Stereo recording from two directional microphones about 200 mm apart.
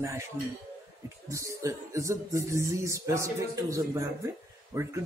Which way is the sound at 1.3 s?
15° right (ahead or behind).